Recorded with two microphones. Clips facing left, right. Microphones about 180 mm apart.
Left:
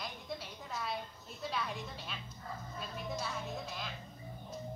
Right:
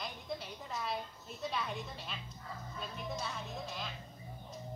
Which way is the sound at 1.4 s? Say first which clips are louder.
Even; centre (ahead or behind).